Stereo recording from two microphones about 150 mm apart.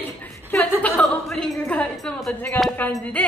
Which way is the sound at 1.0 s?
5° left (ahead or behind).